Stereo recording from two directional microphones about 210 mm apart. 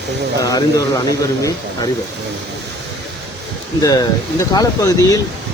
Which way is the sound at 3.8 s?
15° left (ahead or behind).